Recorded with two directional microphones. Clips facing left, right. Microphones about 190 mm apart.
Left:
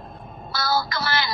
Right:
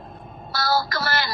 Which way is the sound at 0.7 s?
45° right (ahead or behind).